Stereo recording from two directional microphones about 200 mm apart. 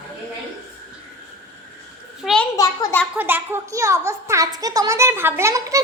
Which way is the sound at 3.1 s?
10° right (ahead or behind).